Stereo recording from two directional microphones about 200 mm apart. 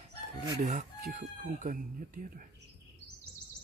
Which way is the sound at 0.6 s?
40° right (ahead or behind).